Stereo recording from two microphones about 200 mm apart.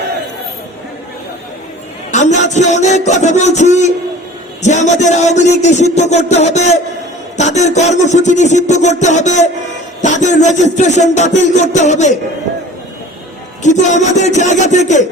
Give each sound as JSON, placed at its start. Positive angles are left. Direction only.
{"t": 2.1, "sound": "speech", "side_deg": 35}
{"t": 13.6, "sound": "speech", "side_deg": 35}